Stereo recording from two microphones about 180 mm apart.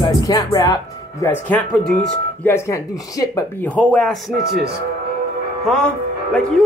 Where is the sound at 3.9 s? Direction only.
5° left (ahead or behind).